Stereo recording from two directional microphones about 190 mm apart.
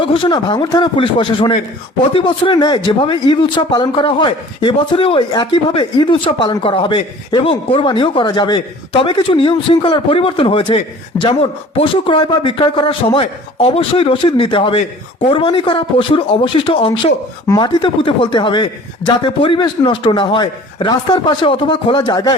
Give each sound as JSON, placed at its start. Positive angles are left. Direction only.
{"t": 0.0, "sound": "speech", "side_deg": 25}